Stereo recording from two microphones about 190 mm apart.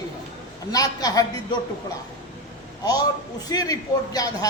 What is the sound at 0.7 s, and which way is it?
Speech, 20° left (ahead or behind).